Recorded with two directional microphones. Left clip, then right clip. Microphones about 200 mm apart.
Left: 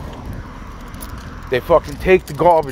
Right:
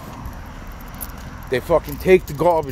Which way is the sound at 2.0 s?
15° right (ahead or behind).